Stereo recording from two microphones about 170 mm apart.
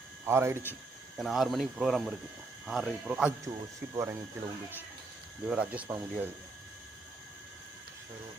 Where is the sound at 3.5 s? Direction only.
20° right (ahead or behind).